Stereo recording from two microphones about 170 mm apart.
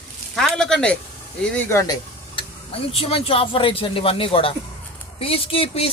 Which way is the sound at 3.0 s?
35° left (ahead or behind).